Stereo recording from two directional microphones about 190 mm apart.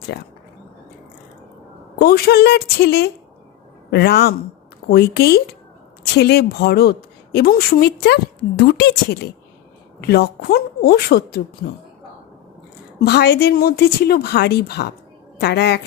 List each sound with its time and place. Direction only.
0.1 s speech: 60° left (ahead or behind)
2.0 s speech: 55° left (ahead or behind)
10.0 s speech: 55° left (ahead or behind)
13.0 s speech: 60° left (ahead or behind)